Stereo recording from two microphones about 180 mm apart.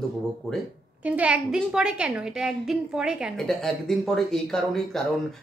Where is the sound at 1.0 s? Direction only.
10° right (ahead or behind).